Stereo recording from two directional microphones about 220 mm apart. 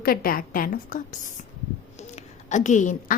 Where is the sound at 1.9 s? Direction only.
30° left (ahead or behind).